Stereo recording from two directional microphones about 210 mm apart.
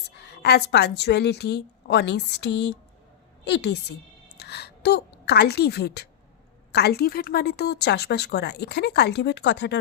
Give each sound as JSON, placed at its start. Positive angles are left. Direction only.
{"t": 0.2, "sound": "speech", "side_deg": 50}
{"t": 4.4, "sound": "a sound", "side_deg": 50}
{"t": 6.7, "sound": "speech", "side_deg": 50}